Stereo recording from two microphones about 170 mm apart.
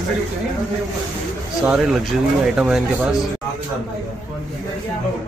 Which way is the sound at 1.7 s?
Centre (ahead or behind).